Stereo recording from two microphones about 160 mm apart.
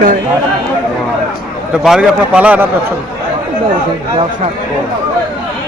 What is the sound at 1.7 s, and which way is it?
Speech, 5° right (ahead or behind).